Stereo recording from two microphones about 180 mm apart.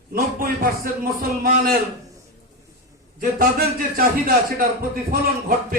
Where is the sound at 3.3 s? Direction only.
55° right (ahead or behind).